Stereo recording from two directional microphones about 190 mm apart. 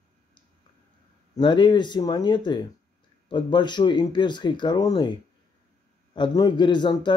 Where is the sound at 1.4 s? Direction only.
25° left (ahead or behind).